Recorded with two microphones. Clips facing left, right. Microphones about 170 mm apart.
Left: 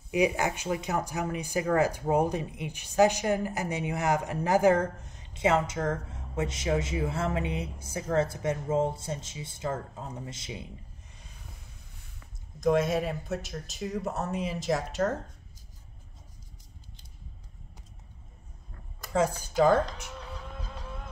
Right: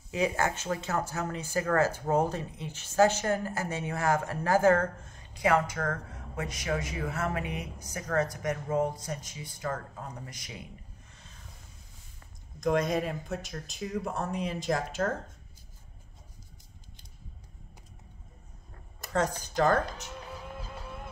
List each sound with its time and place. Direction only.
0.1 s speech: 15° left (ahead or behind)
12.5 s speech: 5° left (ahead or behind)
19.1 s speech: 10° left (ahead or behind)
20.4 s a sound: 5° right (ahead or behind)